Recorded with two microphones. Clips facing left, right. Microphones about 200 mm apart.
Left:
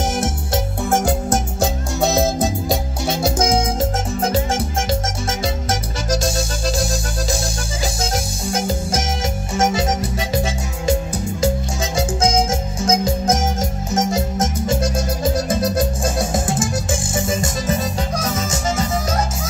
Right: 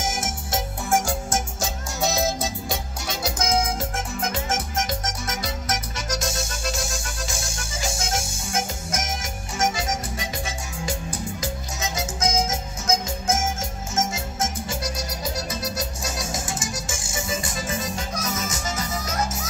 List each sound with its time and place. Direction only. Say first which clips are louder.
0.0 s music: left 7 dB; 60° left (ahead or behind)
2.7 s music: left 9 dB; 30° left (ahead or behind)